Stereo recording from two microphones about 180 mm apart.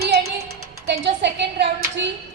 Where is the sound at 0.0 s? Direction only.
60° right (ahead or behind).